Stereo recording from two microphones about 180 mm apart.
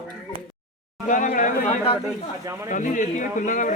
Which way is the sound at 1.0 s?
45° left (ahead or behind).